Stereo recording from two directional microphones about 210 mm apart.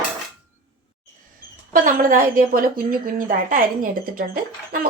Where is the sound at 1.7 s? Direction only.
40° right (ahead or behind).